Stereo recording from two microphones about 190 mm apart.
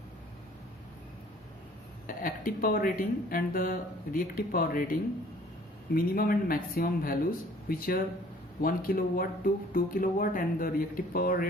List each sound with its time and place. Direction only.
2.0 s speech: 45° left (ahead or behind)